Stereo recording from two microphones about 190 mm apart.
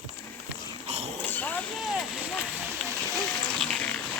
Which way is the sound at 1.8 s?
Centre (ahead or behind).